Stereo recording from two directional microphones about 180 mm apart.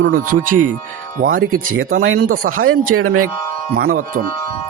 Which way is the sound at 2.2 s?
55° right (ahead or behind).